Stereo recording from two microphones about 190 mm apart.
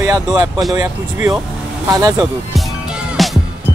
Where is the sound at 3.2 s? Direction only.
Centre (ahead or behind).